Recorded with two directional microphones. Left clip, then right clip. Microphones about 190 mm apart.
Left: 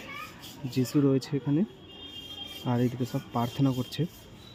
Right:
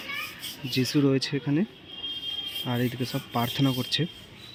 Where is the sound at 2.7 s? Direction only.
10° left (ahead or behind).